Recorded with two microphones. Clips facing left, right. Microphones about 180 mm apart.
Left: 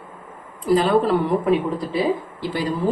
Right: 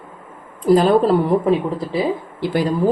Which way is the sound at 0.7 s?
40° right (ahead or behind).